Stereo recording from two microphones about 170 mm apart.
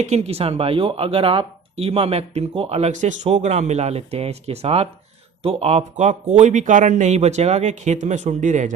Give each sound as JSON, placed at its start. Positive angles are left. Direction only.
{"t": 0.0, "sound": "speech", "side_deg": -40}